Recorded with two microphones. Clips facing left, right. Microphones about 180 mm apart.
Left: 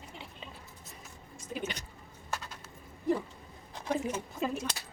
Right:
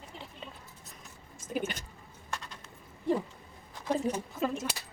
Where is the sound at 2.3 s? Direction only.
5° left (ahead or behind).